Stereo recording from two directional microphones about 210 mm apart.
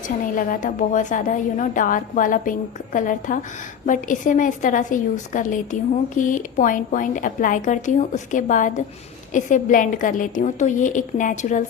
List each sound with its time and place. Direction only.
0.0 s a woman's voice: 40° left (ahead or behind)